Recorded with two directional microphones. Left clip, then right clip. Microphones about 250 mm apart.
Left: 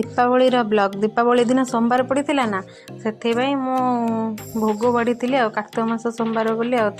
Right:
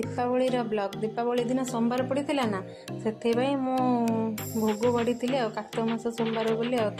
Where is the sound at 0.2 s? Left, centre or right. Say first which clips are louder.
Left 11 dB; left.